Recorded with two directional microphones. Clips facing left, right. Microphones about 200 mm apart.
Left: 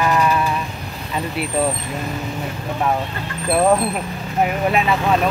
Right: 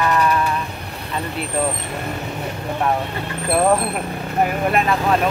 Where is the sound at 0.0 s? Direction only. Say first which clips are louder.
Left 1 dB; 10° left (ahead or behind).